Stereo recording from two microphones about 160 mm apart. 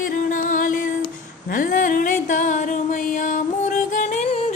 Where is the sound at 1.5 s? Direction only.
60° left (ahead or behind).